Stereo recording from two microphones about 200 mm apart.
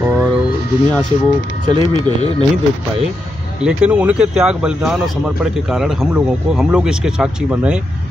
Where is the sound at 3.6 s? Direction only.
5° right (ahead or behind).